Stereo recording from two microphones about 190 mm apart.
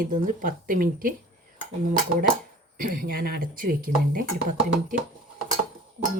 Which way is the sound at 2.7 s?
50° right (ahead or behind).